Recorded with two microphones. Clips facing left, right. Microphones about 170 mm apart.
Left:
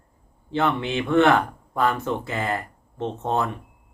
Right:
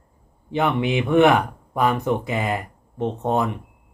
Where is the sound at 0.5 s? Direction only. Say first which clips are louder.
Right 2 dB; 15° right (ahead or behind).